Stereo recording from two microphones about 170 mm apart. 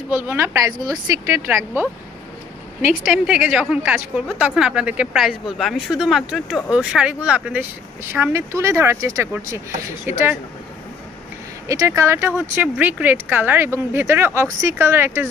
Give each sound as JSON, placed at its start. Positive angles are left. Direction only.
{"t": 0.1, "sound": "a woman's voice", "side_deg": -15}
{"t": 11.6, "sound": "speech", "side_deg": -20}